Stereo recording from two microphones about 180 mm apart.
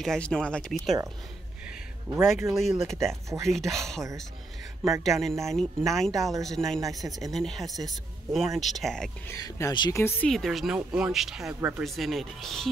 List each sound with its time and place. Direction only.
0.0 s speech: 5° left (ahead or behind)
2.5 s speech: centre (ahead or behind)
5.0 s speech: centre (ahead or behind)
6.8 s speech: 20° right (ahead or behind)
7.3 s speech: centre (ahead or behind)
7.6 s speech: 20° right (ahead or behind)
7.9 s speech: centre (ahead or behind)
9.3 s speech: 20° left (ahead or behind)
10.2 s speech: centre (ahead or behind)